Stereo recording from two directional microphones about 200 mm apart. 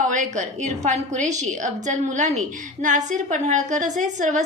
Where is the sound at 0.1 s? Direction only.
40° right (ahead or behind).